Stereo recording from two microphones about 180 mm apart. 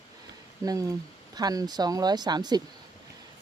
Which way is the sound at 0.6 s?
20° right (ahead or behind).